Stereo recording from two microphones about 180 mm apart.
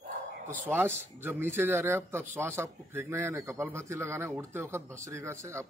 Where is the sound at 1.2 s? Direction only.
10° right (ahead or behind).